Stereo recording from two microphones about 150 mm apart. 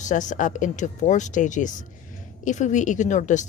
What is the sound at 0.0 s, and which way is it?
Speech, 55° left (ahead or behind).